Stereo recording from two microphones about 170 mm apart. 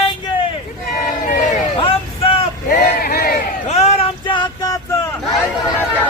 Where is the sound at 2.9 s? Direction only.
60° left (ahead or behind).